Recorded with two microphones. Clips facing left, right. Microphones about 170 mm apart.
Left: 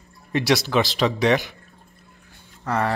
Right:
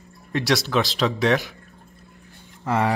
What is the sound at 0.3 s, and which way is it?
Speech, centre (ahead or behind).